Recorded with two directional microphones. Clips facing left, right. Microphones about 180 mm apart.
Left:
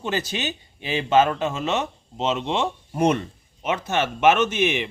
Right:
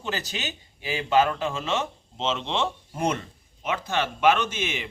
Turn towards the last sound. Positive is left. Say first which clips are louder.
# left 7 dB
turn(degrees=20)  # may be behind; listen again after turning